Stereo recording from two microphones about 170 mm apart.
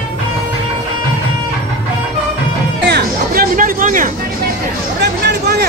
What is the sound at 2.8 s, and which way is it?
Music, 65° right (ahead or behind).